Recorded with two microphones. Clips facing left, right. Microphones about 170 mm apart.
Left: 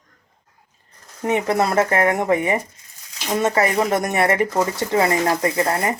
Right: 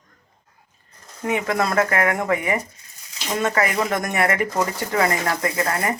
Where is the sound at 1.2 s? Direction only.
25° left (ahead or behind).